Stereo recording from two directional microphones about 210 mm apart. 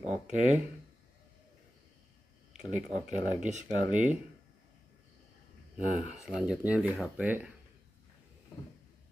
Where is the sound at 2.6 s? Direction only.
35° right (ahead or behind).